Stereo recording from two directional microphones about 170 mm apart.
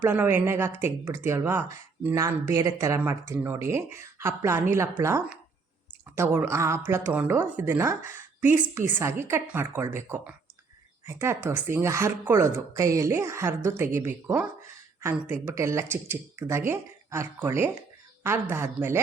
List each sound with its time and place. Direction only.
0.0 s speech: 10° right (ahead or behind)